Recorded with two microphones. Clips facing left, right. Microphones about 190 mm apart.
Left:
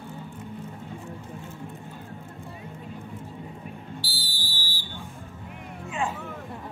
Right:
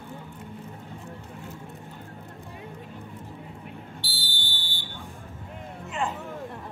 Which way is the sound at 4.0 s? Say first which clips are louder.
Left 1 dB; centre (ahead or behind).